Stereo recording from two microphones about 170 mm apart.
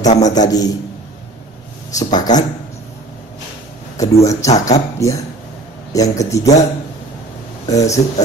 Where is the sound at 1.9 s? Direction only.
25° left (ahead or behind).